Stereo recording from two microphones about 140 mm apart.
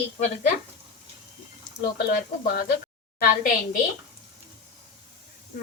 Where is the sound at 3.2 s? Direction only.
80° left.